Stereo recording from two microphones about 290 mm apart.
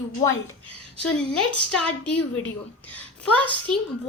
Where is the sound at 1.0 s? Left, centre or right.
Left.